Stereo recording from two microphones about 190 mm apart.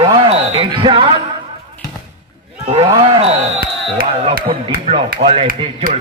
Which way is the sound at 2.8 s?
30° right (ahead or behind).